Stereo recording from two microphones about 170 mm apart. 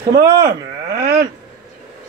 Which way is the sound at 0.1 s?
75° right (ahead or behind).